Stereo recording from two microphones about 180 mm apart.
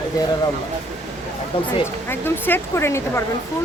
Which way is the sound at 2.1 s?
10° left (ahead or behind).